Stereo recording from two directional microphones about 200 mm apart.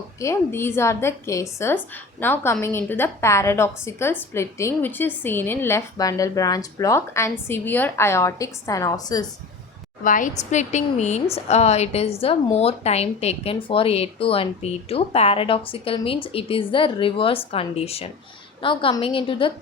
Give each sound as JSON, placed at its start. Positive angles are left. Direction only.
{"t": 0.2, "sound": "a woman's voice", "side_deg": 15}
{"t": 10.0, "sound": "a woman's voice", "side_deg": 40}